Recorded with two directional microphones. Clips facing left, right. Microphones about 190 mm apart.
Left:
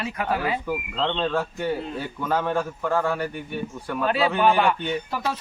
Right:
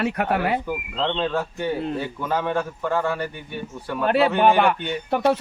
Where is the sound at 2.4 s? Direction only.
5° left (ahead or behind).